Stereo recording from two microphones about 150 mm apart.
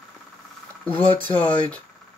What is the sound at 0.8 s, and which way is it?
Speech, 10° left (ahead or behind).